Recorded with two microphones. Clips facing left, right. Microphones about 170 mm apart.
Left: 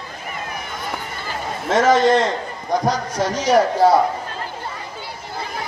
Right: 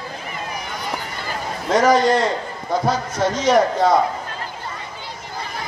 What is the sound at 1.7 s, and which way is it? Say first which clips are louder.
A man's voice: left 1 dB; 25° left (ahead or behind).